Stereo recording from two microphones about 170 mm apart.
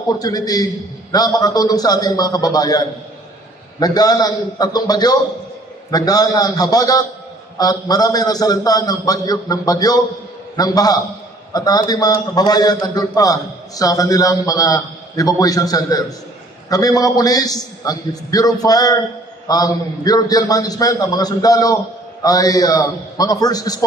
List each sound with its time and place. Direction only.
0.2 s a man's voice: 20° left (ahead or behind)